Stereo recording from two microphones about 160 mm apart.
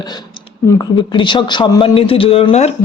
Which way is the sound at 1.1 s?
30° left (ahead or behind).